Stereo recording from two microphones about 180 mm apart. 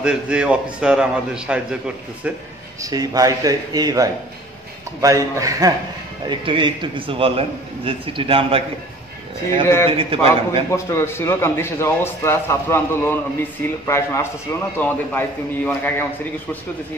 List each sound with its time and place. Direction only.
0.0 s a man's voice: 5° right (ahead or behind)
2.8 s a man's voice: 20° right (ahead or behind)
9.8 s a man's voice: 30° right (ahead or behind)
10.7 s a man's voice: 15° left (ahead or behind)